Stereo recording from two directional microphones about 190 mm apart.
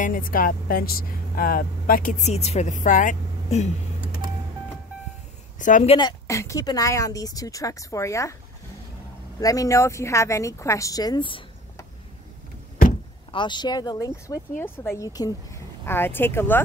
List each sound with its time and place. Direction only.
0.0 s speech: 45° left (ahead or behind)
5.6 s speech: 40° left (ahead or behind)
5.9 s a woman's voice: 20° left (ahead or behind)
9.4 s a woman's voice: 20° left (ahead or behind)
13.3 s a woman's voice: 25° left (ahead or behind)